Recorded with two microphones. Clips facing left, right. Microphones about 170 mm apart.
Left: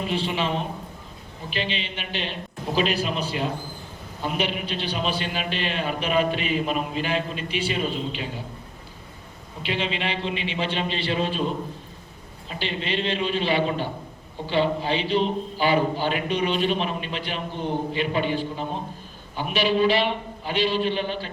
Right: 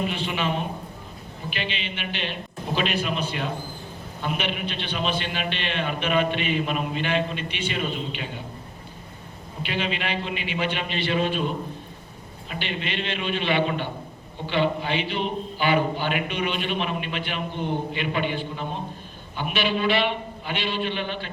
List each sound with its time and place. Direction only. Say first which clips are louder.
0.1 s a man's voice: left 2 dB; 30° left (ahead or behind)
9.6 s a man's voice: left 1 dB; 30° left (ahead or behind)
12.5 s a man's voice: left 2 dB; 30° left (ahead or behind)